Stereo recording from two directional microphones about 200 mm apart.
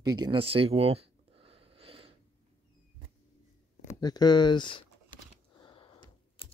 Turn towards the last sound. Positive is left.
turn(degrees=25)  # may be behind; listen again after turning